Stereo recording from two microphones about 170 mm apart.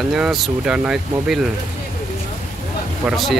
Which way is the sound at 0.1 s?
Centre (ahead or behind).